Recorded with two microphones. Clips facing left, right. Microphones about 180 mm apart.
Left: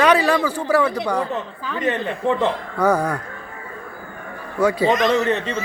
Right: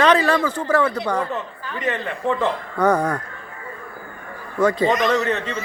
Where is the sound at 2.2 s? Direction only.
25° left (ahead or behind).